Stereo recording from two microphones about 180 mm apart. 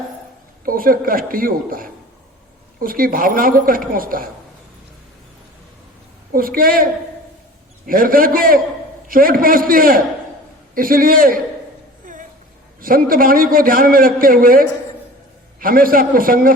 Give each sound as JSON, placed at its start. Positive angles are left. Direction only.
{"t": 0.6, "sound": "a man's voice", "side_deg": -50}
{"t": 6.3, "sound": "a man's voice", "side_deg": -50}
{"t": 7.9, "sound": "a man's voice", "side_deg": -50}
{"t": 12.1, "sound": "a sound", "side_deg": -50}
{"t": 12.8, "sound": "a man's voice", "side_deg": -50}